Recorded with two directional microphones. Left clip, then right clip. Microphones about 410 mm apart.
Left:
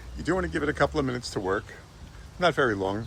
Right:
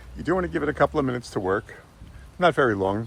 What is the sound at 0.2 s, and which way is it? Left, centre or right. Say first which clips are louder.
Speech: right 3 dB; centre.